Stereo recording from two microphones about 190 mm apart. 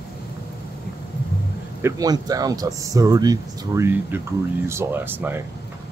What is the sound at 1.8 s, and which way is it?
Speech, 15° right (ahead or behind).